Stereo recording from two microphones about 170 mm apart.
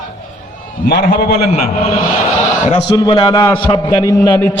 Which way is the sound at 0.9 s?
70° left (ahead or behind).